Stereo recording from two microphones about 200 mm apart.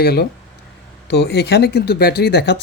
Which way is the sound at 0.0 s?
50° left (ahead or behind).